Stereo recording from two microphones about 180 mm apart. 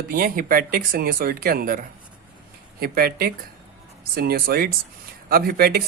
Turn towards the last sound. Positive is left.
turn(degrees=-60)  # may be behind; listen again after turning